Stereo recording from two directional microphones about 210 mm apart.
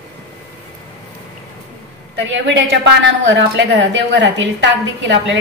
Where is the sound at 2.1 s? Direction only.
55° right (ahead or behind).